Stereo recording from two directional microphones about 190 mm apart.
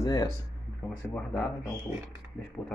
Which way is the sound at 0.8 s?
5° left (ahead or behind).